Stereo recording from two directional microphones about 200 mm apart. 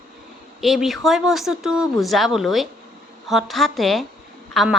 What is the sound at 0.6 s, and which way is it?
A woman's voice, centre (ahead or behind).